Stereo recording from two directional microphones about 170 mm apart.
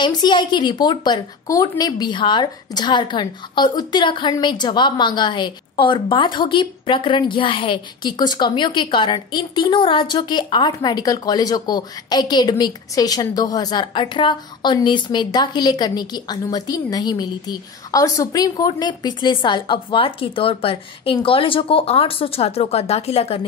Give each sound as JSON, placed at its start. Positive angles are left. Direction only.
{"t": 0.0, "sound": "a woman's voice", "side_deg": 25}